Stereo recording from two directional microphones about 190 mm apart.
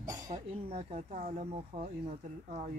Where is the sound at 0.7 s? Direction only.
35° right (ahead or behind).